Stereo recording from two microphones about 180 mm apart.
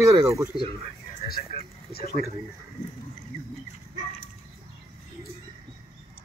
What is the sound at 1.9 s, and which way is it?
Speech, 55° left (ahead or behind).